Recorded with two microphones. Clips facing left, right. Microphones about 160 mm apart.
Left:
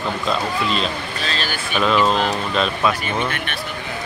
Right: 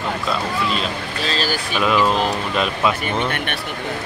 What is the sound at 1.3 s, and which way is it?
Speech, 35° right (ahead or behind).